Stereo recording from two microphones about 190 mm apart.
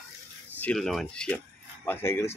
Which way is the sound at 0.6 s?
5° left (ahead or behind).